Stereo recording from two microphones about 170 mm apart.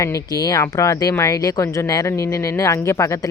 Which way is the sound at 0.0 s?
20° left (ahead or behind).